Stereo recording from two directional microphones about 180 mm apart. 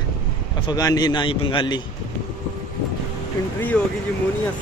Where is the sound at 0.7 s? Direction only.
20° left (ahead or behind).